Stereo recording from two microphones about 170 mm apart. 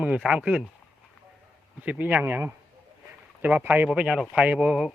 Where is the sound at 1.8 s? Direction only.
10° right (ahead or behind).